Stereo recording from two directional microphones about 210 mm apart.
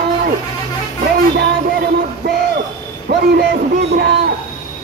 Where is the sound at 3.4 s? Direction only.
45° right (ahead or behind).